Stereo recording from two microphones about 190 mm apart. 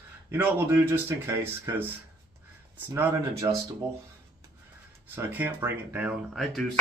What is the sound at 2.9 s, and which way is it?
Speech, 15° right (ahead or behind).